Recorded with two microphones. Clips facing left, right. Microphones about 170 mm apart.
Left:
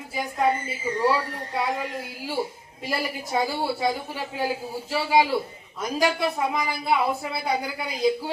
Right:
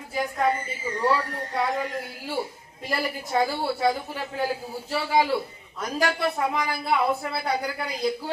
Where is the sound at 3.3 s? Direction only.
10° left (ahead or behind).